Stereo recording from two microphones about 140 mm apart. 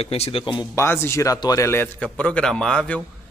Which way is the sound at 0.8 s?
20° left (ahead or behind).